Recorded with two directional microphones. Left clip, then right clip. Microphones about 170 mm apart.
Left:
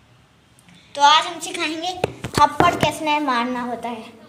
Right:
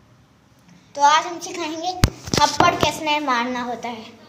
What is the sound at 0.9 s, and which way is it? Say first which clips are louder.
A woman's voice: left 2 dB; centre (ahead or behind).